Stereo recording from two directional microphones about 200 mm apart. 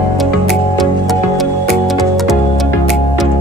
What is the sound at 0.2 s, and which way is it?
Music, centre (ahead or behind).